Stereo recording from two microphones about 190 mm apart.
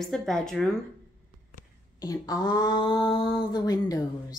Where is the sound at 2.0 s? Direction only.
20° left (ahead or behind).